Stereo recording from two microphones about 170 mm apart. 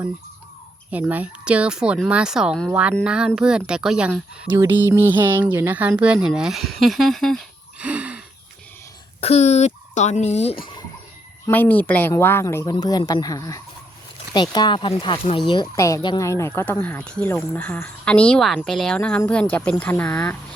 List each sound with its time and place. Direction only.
0.9 s a woman's voice: 10° right (ahead or behind)
7.8 s a sound: 10° right (ahead or behind)
9.2 s a child's voice: 40° left (ahead or behind)
11.4 s speech: 10° left (ahead or behind)